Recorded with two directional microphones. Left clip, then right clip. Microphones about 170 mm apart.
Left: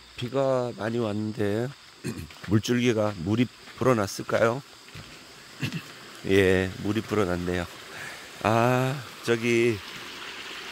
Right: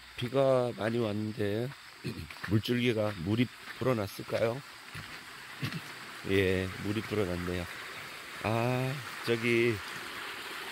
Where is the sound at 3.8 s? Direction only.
30° left (ahead or behind).